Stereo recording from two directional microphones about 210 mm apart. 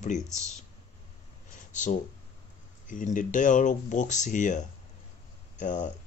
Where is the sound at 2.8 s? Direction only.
40° left (ahead or behind).